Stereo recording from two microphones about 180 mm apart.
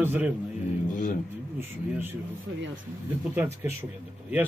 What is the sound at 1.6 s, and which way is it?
Speech, 10° right (ahead or behind).